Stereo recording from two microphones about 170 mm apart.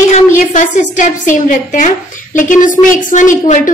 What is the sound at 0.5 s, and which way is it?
A woman's voice, 50° left (ahead or behind).